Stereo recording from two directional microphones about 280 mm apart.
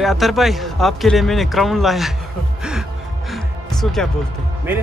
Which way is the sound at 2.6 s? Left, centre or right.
Centre.